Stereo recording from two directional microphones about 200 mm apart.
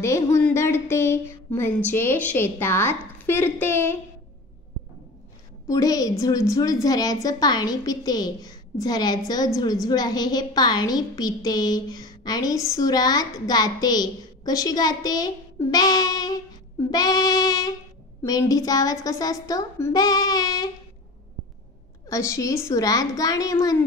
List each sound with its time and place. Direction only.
0.0 s speech: 15° left (ahead or behind)
5.7 s a woman's voice: 15° left (ahead or behind)
22.1 s speech: 15° left (ahead or behind)